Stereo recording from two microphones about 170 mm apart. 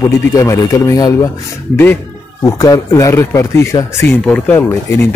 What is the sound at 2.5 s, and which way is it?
Speech, 20° left (ahead or behind).